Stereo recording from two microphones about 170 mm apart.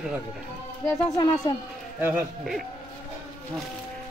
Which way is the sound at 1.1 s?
25° left (ahead or behind).